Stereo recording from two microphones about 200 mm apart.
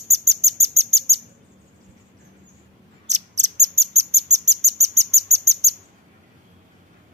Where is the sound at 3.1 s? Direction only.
35° right (ahead or behind).